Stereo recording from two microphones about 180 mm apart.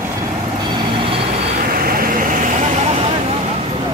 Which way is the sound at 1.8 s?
50° right (ahead or behind).